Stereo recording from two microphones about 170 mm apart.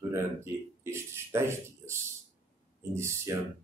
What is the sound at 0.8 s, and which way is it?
Speech, 15° right (ahead or behind).